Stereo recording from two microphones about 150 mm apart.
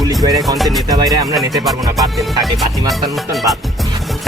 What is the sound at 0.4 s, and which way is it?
Speech, centre (ahead or behind).